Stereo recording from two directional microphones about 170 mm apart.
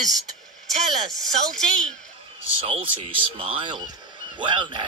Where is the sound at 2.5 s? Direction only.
35° right (ahead or behind).